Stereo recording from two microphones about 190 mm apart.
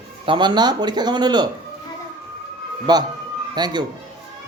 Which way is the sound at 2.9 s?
20° right (ahead or behind).